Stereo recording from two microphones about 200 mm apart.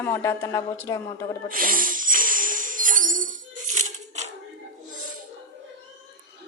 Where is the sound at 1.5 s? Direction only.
45° right (ahead or behind).